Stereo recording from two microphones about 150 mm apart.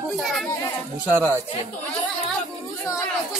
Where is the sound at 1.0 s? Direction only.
15° right (ahead or behind).